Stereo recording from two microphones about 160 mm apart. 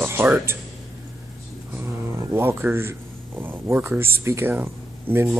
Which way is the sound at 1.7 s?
15° right (ahead or behind).